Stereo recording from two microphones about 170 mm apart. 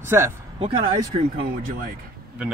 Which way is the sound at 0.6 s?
35° right (ahead or behind).